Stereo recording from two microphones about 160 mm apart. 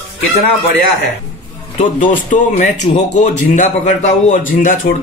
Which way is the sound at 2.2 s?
50° left (ahead or behind).